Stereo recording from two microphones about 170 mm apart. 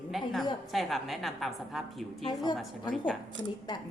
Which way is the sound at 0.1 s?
Centre (ahead or behind).